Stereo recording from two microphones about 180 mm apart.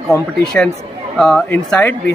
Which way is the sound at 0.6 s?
5° left (ahead or behind).